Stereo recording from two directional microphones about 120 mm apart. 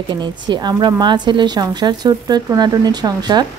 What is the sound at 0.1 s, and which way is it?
Speech, 35° right (ahead or behind).